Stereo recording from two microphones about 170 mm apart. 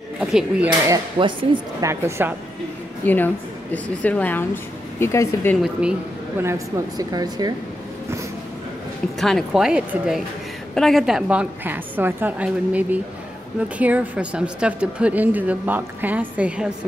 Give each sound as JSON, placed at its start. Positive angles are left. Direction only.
{"t": 0.2, "sound": "speech", "side_deg": -5}
{"t": 0.7, "sound": "speech", "side_deg": -25}
{"t": 1.9, "sound": "a woman's voice", "side_deg": -15}
{"t": 3.0, "sound": "a woman's voice", "side_deg": 10}
{"t": 5.6, "sound": "speech", "side_deg": -5}
{"t": 6.4, "sound": "speech", "side_deg": -20}
{"t": 9.2, "sound": "a woman's voice", "side_deg": 0}